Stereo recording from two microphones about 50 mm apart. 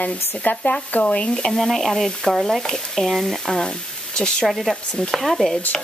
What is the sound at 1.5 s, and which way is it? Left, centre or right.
Speech, centre.